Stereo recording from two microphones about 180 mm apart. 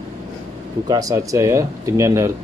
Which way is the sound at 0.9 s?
20° right (ahead or behind).